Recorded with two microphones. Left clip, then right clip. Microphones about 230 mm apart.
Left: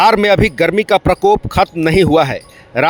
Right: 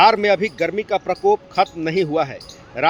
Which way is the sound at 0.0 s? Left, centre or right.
Left.